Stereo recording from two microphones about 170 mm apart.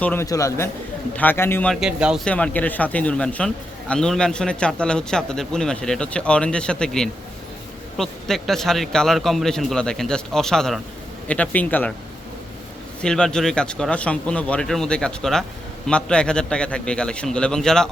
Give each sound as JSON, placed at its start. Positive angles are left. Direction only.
{"t": 0.0, "sound": "a man's voice", "side_deg": 15}
{"t": 1.7, "sound": "a man's voice", "side_deg": -5}
{"t": 2.2, "sound": "a man's voice", "side_deg": 10}
{"t": 13.0, "sound": "a man's voice", "side_deg": 5}